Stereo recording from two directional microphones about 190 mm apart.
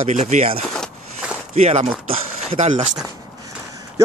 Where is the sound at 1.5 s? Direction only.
35° right (ahead or behind).